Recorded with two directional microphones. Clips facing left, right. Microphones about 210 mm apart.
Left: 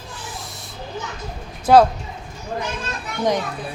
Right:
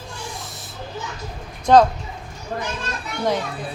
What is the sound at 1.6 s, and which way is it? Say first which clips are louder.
Speech: left 1 dB; 10° left (ahead or behind).